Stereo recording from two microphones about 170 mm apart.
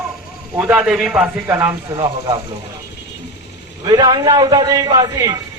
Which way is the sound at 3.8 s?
25° right (ahead or behind).